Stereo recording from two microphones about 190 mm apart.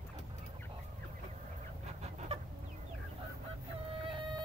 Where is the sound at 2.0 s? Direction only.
30° right (ahead or behind).